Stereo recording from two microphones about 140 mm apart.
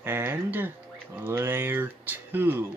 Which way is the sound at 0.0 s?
15° right (ahead or behind).